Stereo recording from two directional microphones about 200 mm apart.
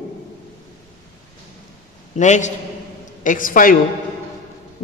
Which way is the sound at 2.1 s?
35° left (ahead or behind).